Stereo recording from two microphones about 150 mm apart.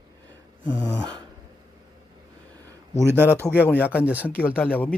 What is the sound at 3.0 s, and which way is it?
Speech, 15° right (ahead or behind).